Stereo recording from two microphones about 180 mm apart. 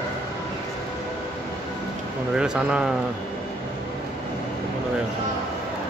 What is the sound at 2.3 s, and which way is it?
Speech, 5° right (ahead or behind).